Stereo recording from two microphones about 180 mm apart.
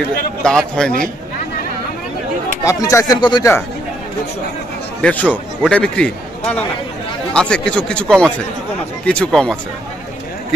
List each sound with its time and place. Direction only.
0.4 s speech: 5° left (ahead or behind)
2.6 s a man's voice: 15° left (ahead or behind)
5.0 s a man's voice: 10° left (ahead or behind)